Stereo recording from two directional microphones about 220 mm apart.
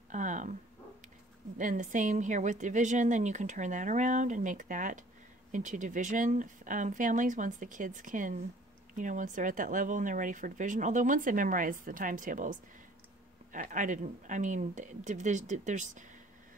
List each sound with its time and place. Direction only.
0.1 s dog: 35° right (ahead or behind)
1.6 s speech: 35° right (ahead or behind)